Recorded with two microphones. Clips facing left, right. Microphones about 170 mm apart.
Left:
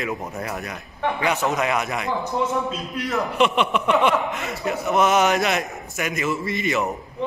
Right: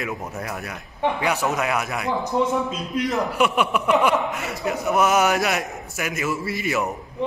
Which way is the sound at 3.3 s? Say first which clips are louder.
Left 3 dB; 5° right (ahead or behind).